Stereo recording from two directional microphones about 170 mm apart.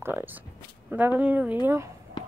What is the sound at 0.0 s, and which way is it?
Speech, 10° right (ahead or behind).